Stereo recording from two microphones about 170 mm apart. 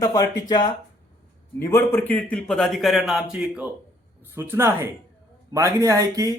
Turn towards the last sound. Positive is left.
turn(degrees=-20)  # may be behind; listen again after turning